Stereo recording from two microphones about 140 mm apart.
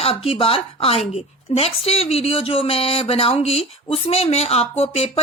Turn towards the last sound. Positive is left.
turn(degrees=45)  # may be behind; listen again after turning